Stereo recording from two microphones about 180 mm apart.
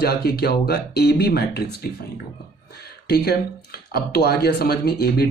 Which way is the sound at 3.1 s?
65° left (ahead or behind).